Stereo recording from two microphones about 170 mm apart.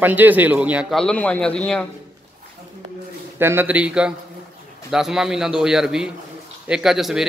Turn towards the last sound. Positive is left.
turn(degrees=0)  # may be behind; listen again after turning